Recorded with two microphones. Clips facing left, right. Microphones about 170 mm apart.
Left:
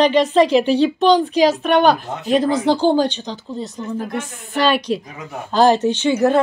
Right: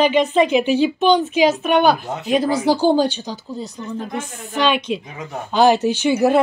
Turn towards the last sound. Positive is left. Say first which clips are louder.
# even
turn(degrees=-10)  # may be behind; listen again after turning